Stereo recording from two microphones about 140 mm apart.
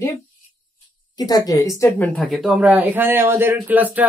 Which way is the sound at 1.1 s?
25° left (ahead or behind).